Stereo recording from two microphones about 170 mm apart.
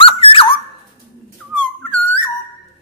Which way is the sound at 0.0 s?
30° left (ahead or behind).